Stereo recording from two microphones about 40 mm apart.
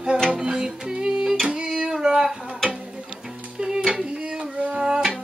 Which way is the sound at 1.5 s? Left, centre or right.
Right.